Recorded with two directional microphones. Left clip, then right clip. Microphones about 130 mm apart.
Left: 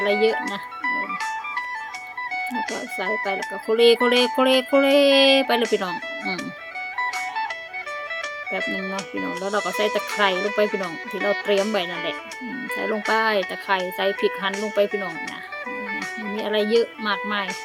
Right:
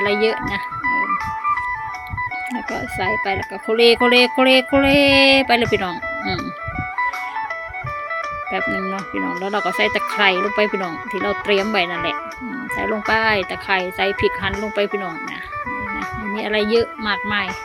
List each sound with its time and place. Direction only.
0.0 s music: 15° right (ahead or behind)
0.9 s music: 15° left (ahead or behind)
3.2 s music: 15° right (ahead or behind)
9.4 s music: 15° right (ahead or behind)
16.3 s music: 10° right (ahead or behind)